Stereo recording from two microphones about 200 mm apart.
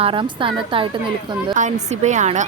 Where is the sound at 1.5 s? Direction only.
35° right (ahead or behind).